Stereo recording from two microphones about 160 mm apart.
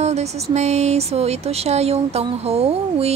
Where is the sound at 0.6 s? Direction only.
45° right (ahead or behind).